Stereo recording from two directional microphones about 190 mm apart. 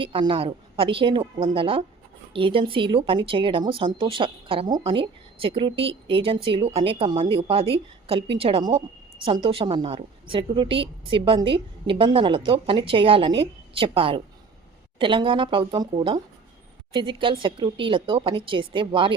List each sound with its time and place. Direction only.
0.0 s a woman's voice: 25° right (ahead or behind)